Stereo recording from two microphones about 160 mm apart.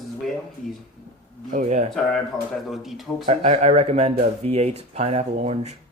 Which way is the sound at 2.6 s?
Centre (ahead or behind).